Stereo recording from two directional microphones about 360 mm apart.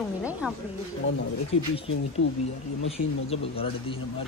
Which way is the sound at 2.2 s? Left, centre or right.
Left.